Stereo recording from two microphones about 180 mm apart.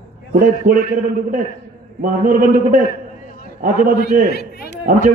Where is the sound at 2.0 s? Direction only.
50° right (ahead or behind).